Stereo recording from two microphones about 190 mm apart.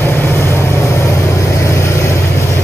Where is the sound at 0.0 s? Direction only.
15° left (ahead or behind).